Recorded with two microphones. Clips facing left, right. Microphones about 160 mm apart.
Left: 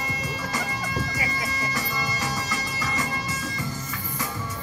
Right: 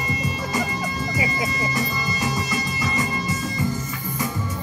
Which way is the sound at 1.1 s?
15° right (ahead or behind).